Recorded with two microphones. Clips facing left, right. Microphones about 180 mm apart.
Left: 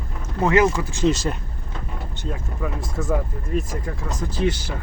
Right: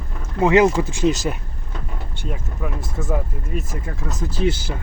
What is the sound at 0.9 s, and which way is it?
Speech, 5° right (ahead or behind).